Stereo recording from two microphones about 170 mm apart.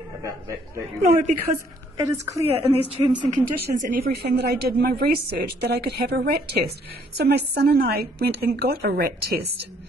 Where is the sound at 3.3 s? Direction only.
50° right (ahead or behind).